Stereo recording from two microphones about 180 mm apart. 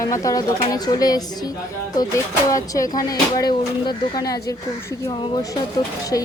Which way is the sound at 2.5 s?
20° left (ahead or behind).